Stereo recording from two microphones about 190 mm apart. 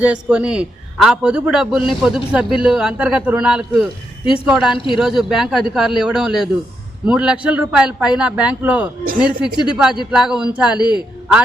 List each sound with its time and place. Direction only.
0.0 s a man's voice: 5° right (ahead or behind)
10.8 s speech: 20° left (ahead or behind)